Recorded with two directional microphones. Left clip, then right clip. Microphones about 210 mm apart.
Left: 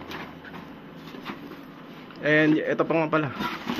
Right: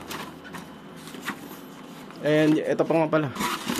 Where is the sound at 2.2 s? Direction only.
20° right (ahead or behind).